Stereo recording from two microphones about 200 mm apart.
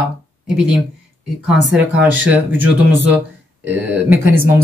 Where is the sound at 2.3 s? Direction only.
10° right (ahead or behind).